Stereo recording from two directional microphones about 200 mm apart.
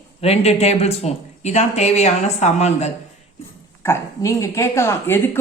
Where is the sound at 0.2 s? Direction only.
30° left (ahead or behind).